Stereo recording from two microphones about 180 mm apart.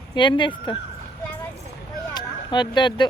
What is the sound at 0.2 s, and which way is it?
Speech, 25° left (ahead or behind).